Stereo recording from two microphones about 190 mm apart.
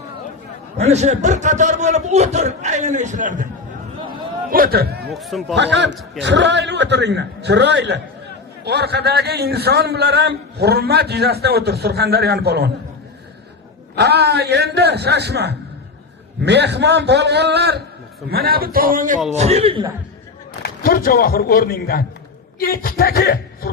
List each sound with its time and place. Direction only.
0.8 s a man's voice: 35° right (ahead or behind)
4.5 s a man's voice: 50° right (ahead or behind)
5.1 s a man's voice: centre (ahead or behind)
5.5 s a man's voice: 65° right (ahead or behind)
13.9 s a man's voice: 60° right (ahead or behind); by 19.9 s 30° right (ahead or behind)
20.6 s speech: 50° left (ahead or behind)